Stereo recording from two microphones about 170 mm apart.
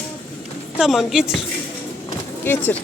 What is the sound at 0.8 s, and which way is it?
Speech, centre (ahead or behind).